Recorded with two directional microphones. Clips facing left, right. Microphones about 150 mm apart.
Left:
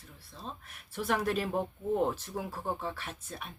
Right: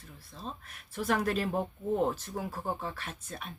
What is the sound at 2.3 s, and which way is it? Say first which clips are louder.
Speech: even; 15° left (ahead or behind).